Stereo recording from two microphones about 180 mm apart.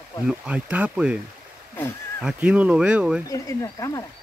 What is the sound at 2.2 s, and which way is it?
Speech, 5° right (ahead or behind).